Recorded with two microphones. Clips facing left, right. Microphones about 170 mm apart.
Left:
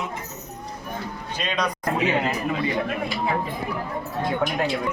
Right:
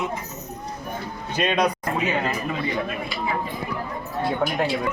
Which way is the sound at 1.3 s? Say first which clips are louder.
Right 6 dB; 55° right (ahead or behind).